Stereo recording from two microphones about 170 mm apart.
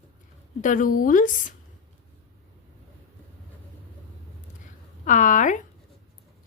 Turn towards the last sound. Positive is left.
turn(degrees=45)  # may be behind; listen again after turning